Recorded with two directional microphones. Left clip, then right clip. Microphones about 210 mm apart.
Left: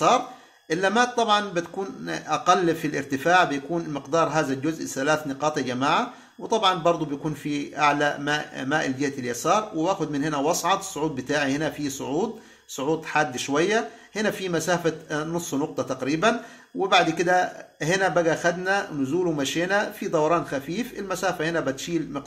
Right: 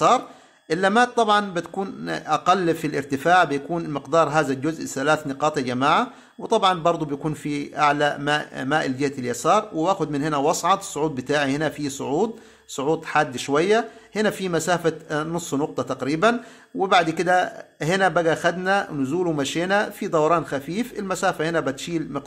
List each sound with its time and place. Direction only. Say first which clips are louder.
0.7 s a man's voice: right 3 dB; 35° right (ahead or behind)